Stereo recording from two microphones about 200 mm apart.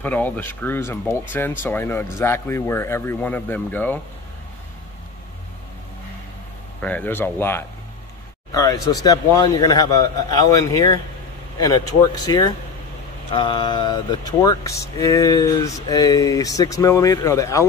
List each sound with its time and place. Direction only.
0.0 s speech: 10° left (ahead or behind)
6.8 s speech: 10° left (ahead or behind)
12.2 s speech: 20° left (ahead or behind)